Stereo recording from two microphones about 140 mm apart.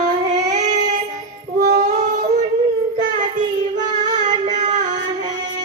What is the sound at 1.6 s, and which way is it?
Female singing, 60° right (ahead or behind).